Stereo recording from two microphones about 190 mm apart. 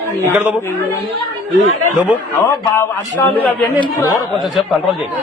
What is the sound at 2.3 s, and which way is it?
A man's voice, 10° left (ahead or behind).